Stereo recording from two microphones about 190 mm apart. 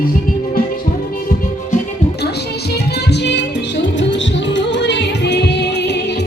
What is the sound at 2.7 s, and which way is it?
Music, 60° left (ahead or behind).